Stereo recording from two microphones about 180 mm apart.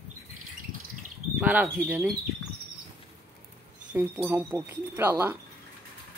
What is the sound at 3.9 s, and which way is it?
Speech, 10° right (ahead or behind).